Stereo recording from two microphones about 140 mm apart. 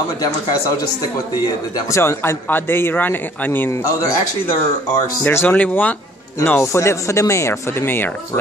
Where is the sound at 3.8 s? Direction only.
25° left (ahead or behind).